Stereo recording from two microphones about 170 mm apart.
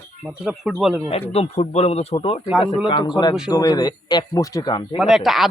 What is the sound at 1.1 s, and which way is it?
Speech, 35° left (ahead or behind).